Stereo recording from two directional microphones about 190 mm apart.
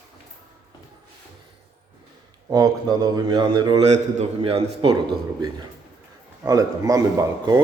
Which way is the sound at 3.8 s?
35° right (ahead or behind).